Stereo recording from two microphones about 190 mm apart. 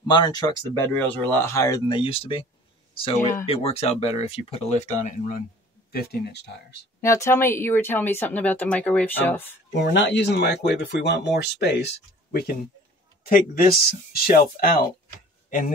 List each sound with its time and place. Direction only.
0.0 s speech: 20° left (ahead or behind)
3.4 s speech: 30° left (ahead or behind)
5.9 s speech: 55° left (ahead or behind)
7.0 s speech: 15° left (ahead or behind)
9.8 s speech: 70° left (ahead or behind); by 14.9 s 50° left (ahead or behind)